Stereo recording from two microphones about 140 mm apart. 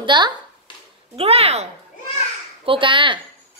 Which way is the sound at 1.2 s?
45° right (ahead or behind).